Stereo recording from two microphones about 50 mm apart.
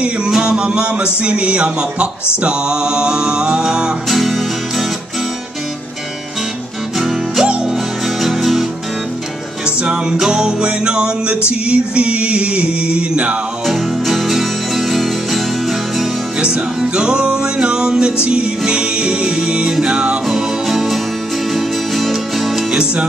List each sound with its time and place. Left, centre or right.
0.0 s speech: centre
4.1 s music: centre
7.0 s music: centre
9.8 s speech: centre
13.7 s music: centre
16.3 s speech: centre
20.2 s music: centre
22.7 s music: centre